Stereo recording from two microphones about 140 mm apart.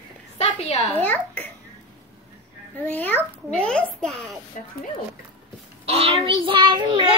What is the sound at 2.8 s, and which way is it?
A child's voice, 10° left (ahead or behind).